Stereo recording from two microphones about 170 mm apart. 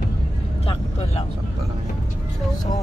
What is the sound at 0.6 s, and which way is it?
Vehicle, 35° left (ahead or behind).